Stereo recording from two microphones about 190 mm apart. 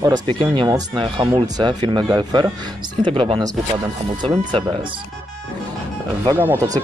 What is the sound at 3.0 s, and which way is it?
Speech, 30° right (ahead or behind).